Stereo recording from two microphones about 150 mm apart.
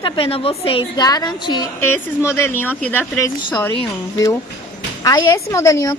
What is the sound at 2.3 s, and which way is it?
Speech, 15° left (ahead or behind).